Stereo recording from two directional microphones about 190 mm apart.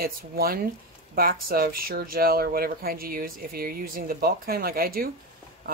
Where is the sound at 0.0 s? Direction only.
50° right (ahead or behind).